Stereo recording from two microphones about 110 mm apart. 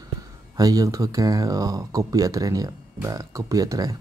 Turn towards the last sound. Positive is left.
turn(degrees=-30)  # may be behind; listen again after turning